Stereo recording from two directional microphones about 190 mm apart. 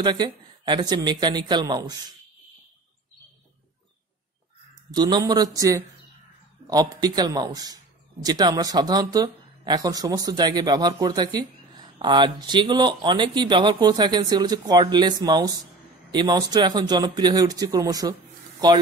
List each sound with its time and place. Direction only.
0.0 s a man's voice: 25° right (ahead or behind)
4.9 s a man's voice: 20° right (ahead or behind)